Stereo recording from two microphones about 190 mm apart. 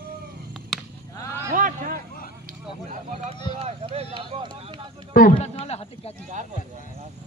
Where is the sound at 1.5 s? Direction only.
45° right (ahead or behind).